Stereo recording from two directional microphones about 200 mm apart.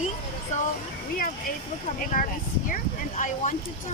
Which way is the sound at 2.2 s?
45° left (ahead or behind).